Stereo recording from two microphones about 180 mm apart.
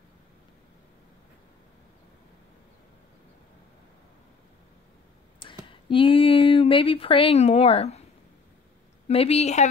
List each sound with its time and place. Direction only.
5.7 s speech: 30° left (ahead or behind)
9.0 s a woman's voice: 35° left (ahead or behind)